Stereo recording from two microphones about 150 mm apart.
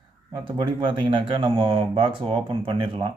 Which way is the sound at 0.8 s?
35° right (ahead or behind).